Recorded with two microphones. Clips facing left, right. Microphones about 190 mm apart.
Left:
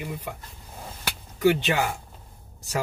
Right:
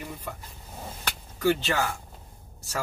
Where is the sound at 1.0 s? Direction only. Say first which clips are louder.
Left 4 dB; 15° left (ahead or behind).